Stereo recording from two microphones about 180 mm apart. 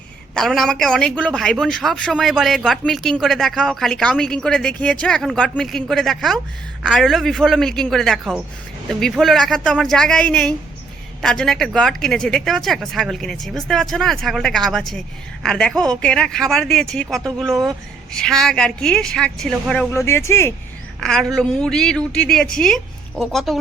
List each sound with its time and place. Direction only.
0.3 s a woman's voice: centre (ahead or behind)
17.5 s speech: 15° right (ahead or behind)
18.1 s a woman's voice: 5° left (ahead or behind)
21.0 s a woman's voice: 5° left (ahead or behind)